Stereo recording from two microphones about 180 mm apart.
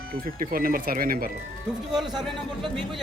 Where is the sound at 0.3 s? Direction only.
50° right (ahead or behind).